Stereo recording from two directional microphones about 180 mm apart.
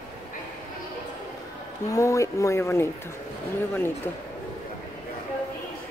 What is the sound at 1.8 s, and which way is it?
Speech, 15° left (ahead or behind).